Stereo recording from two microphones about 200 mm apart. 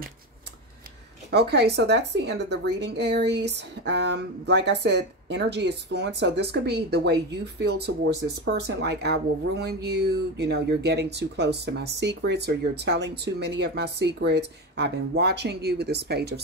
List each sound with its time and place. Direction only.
1.3 s speech: 55° right (ahead or behind)